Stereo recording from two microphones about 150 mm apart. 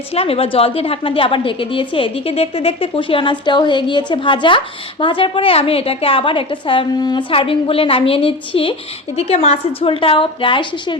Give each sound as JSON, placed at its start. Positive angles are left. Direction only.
{"t": 0.1, "sound": "a woman's voice", "side_deg": 40}